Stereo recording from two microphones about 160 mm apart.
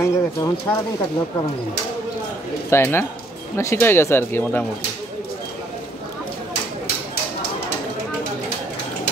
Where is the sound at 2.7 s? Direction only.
15° left (ahead or behind).